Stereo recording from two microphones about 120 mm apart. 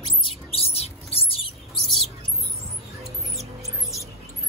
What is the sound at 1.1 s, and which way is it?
Rodents, 55° left (ahead or behind).